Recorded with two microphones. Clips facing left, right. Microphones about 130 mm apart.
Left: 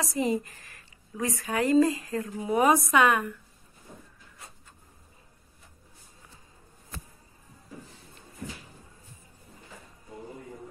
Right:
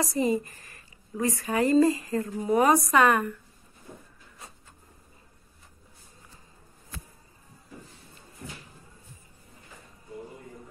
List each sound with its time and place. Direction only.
0.0 s speech: centre (ahead or behind)